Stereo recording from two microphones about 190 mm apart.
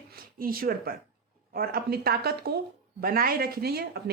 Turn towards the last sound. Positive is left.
turn(degrees=-55)  # may be behind; listen again after turning